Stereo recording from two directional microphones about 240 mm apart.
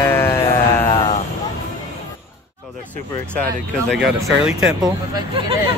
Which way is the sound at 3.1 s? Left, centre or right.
Centre.